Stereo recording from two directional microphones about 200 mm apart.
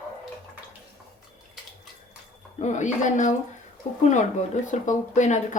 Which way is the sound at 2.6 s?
35° left (ahead or behind).